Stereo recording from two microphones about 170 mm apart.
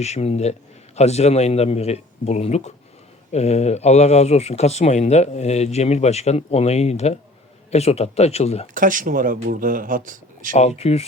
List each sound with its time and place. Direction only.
0.0 s speech: 40° left (ahead or behind)
8.6 s speech: 50° right (ahead or behind)
10.5 s speech: 40° left (ahead or behind)